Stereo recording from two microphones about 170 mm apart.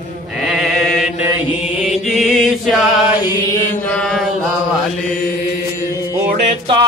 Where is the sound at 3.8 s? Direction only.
5° left (ahead or behind).